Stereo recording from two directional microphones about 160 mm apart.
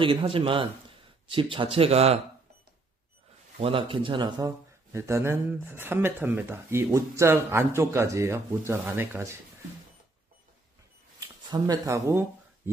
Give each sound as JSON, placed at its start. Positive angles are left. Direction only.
{"t": 0.0, "sound": "speech", "side_deg": -35}
{"t": 3.5, "sound": "speech", "side_deg": -35}
{"t": 11.1, "sound": "shuffling cards", "side_deg": -25}